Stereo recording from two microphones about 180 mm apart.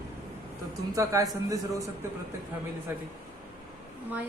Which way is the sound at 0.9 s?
20° right (ahead or behind).